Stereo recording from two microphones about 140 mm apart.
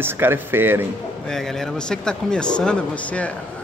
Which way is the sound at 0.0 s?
15° right (ahead or behind).